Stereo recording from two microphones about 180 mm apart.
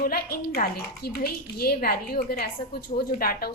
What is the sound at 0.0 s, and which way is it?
A woman's voice, 55° left (ahead or behind).